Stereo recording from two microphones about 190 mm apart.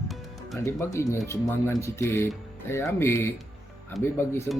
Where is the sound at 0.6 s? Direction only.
15° left (ahead or behind).